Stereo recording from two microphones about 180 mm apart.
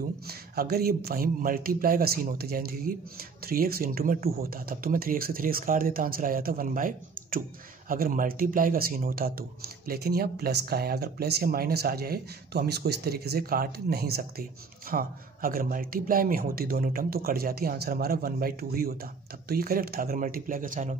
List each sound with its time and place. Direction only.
0.3 s a man's voice: 60° right (ahead or behind)